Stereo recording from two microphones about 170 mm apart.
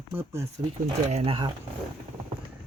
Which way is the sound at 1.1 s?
30° right (ahead or behind).